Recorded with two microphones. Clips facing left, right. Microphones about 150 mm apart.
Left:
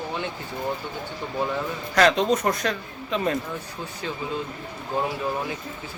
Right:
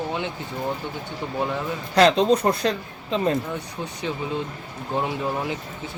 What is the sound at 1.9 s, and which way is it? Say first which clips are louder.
A man's voice: right 3 dB; 30° right (ahead or behind).